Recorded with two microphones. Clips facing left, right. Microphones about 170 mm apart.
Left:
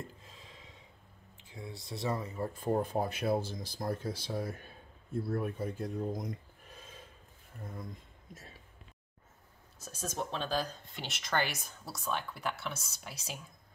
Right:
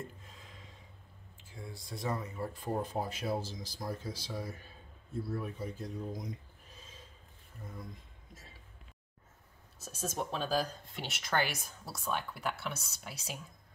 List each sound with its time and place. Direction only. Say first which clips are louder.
1.3 s a sound: left 2 dB; 20° left (ahead or behind)
2.5 s speech: left 5 dB; 55° left (ahead or behind)
9.8 s speech: right 1 dB; centre (ahead or behind)